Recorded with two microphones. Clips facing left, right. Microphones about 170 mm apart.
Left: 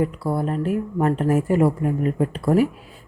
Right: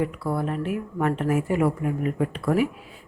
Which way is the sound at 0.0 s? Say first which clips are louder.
Left 3 dB; 35° left (ahead or behind).